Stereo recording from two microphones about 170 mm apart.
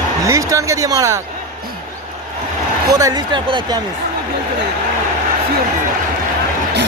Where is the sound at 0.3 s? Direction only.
20° right (ahead or behind).